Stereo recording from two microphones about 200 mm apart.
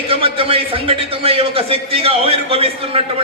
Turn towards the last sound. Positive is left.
turn(degrees=-30)  # may be behind; listen again after turning